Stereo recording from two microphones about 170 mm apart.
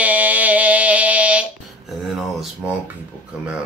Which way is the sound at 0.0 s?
10° right (ahead or behind).